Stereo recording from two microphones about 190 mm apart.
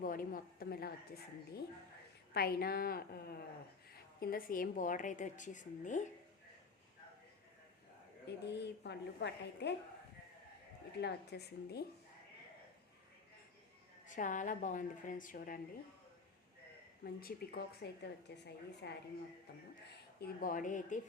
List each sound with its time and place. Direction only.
0.0 s a woman's voice: 45° left (ahead or behind)
8.4 s a woman's voice: 65° left (ahead or behind)
10.9 s a woman's voice: 60° left (ahead or behind)
14.1 s a woman's voice: 45° left (ahead or behind)
17.0 s a woman's voice: 55° left (ahead or behind)
20.1 s a woman's voice: 50° left (ahead or behind)